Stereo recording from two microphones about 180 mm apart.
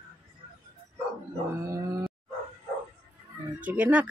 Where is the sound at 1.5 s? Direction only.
15° right (ahead or behind).